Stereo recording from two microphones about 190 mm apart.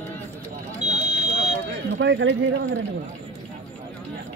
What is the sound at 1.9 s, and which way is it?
Speech, 85° right.